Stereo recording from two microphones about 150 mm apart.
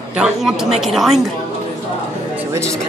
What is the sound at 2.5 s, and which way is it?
Speech, 20° right (ahead or behind).